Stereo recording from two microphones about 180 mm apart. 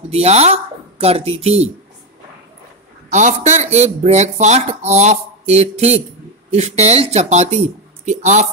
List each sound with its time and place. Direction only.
0.1 s speech: 35° right (ahead or behind)
3.1 s speech: 40° right (ahead or behind)